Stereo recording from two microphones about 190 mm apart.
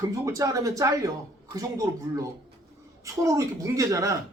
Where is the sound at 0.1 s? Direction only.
15° right (ahead or behind).